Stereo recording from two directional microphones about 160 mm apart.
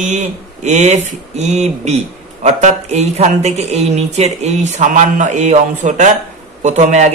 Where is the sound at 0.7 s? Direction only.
45° right (ahead or behind).